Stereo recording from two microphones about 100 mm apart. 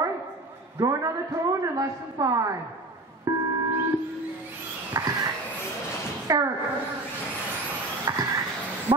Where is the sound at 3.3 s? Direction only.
30° right (ahead or behind).